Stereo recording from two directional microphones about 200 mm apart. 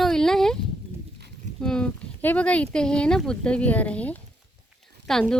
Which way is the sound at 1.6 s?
5° left (ahead or behind).